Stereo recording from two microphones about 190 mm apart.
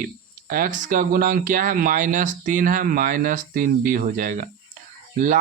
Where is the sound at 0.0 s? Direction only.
45° right (ahead or behind).